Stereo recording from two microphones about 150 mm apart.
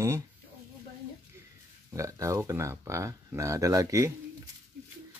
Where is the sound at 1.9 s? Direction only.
20° right (ahead or behind).